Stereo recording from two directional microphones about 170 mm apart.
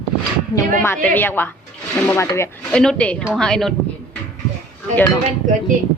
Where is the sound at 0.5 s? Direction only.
15° left (ahead or behind).